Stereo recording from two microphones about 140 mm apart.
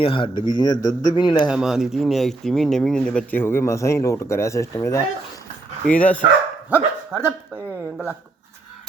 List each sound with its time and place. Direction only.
0.0 s a man's voice: 40° left (ahead or behind)
1.5 s speech: 5° right (ahead or behind); by 5.0 s 20° left (ahead or behind)
5.8 s speech: 10° left (ahead or behind)
6.7 s speech: 15° right (ahead or behind)